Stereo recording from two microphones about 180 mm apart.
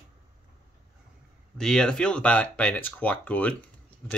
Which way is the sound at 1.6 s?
5° left (ahead or behind).